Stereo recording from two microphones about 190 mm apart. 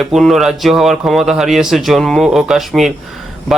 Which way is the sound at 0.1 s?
Centre (ahead or behind).